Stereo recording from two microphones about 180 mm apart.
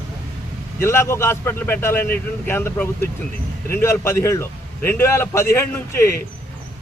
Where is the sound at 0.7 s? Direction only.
15° left (ahead or behind).